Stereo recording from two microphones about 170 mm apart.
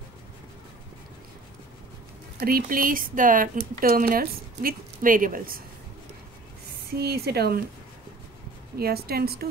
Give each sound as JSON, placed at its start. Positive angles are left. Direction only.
{"t": 2.4, "sound": "speech", "side_deg": -60}
{"t": 7.0, "sound": "speech", "side_deg": -70}
{"t": 8.7, "sound": "speech", "side_deg": -65}